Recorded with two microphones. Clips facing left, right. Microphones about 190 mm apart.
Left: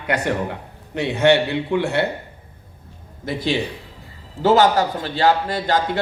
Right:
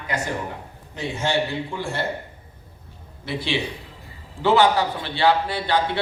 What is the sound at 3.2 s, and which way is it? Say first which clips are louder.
A man's voice: left 4 dB; 45° left (ahead or behind).